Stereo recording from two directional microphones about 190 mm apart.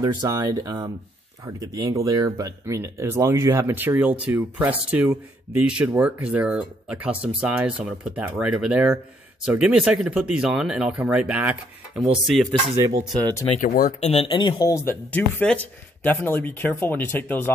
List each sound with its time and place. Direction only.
0.0 s speech: 20° right (ahead or behind); by 12.4 s 5° right (ahead or behind)
12.4 s speech: 15° right (ahead or behind)
13.0 s speech: centre (ahead or behind)
13.6 s speech: 45° left (ahead or behind)
14.0 s speech: 30° left (ahead or behind); by 17.5 s 10° left (ahead or behind)